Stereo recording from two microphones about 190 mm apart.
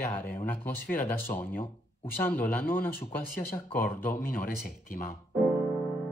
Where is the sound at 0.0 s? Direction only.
45° left (ahead or behind).